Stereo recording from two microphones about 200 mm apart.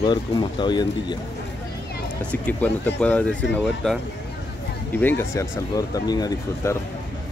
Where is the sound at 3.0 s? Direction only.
5° left (ahead or behind).